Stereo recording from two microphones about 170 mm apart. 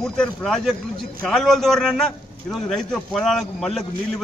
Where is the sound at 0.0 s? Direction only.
5° left (ahead or behind).